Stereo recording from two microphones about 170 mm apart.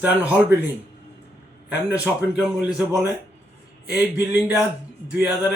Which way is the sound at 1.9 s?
5° right (ahead or behind).